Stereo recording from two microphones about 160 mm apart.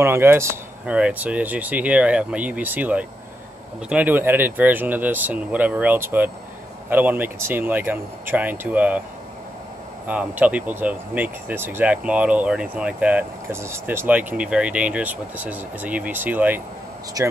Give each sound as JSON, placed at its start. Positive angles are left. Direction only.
{"t": 0.0, "sound": "speech", "side_deg": -15}
{"t": 10.0, "sound": "speech", "side_deg": -10}
{"t": 17.2, "sound": "speech", "side_deg": -20}